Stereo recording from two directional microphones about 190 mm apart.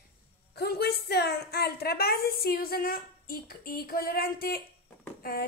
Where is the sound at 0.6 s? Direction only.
55° left (ahead or behind).